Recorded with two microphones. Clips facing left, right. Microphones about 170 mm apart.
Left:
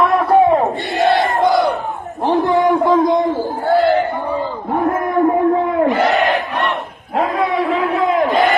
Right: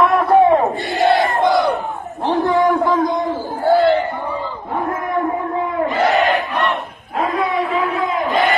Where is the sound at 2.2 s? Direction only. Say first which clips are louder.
Left 1 dB; 20° left (ahead or behind).